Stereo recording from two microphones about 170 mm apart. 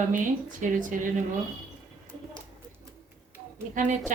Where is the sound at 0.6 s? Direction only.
50° right (ahead or behind).